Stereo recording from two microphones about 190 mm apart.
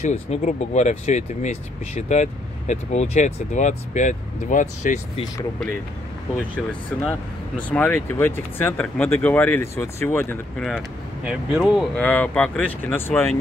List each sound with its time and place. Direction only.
0.1 s speech: 40° left (ahead or behind)
7.1 s speech: 5° left (ahead or behind)
11.2 s speech: 5° right (ahead or behind)